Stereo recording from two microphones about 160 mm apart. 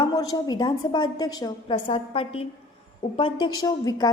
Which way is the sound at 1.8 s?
35° left (ahead or behind).